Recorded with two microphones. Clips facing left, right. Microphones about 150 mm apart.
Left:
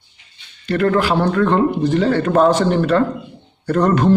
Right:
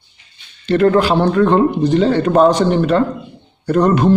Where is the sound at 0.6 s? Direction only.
25° right (ahead or behind).